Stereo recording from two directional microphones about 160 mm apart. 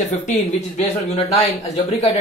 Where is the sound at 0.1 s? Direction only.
50° left (ahead or behind).